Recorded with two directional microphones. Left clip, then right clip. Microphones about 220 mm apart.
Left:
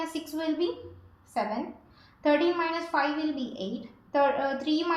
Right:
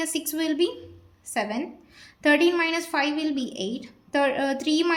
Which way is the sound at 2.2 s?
40° right (ahead or behind).